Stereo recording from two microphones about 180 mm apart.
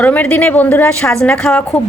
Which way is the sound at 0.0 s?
10° left (ahead or behind).